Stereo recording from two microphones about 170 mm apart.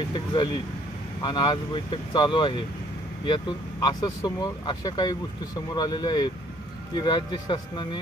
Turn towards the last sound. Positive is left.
turn(degrees=25)  # may be behind; listen again after turning